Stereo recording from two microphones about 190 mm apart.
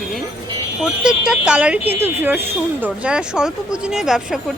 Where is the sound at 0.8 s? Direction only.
5° right (ahead or behind).